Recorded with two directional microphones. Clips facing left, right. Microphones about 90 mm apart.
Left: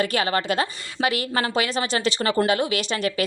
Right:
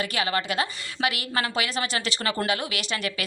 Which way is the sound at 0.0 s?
35° left (ahead or behind).